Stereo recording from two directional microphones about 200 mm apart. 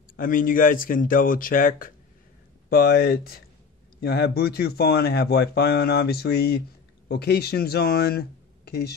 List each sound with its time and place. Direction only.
0.1 s speech: 45° left (ahead or behind)